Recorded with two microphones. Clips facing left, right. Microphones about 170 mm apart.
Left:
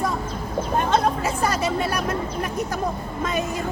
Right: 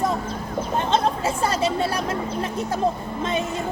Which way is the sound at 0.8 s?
25° right (ahead or behind).